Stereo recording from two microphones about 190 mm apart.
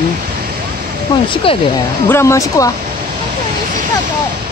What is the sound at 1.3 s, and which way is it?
Speech, 30° left (ahead or behind).